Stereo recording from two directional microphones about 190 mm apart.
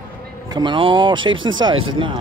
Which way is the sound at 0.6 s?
25° right (ahead or behind).